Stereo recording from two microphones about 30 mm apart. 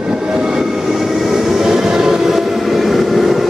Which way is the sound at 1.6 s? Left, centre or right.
Centre.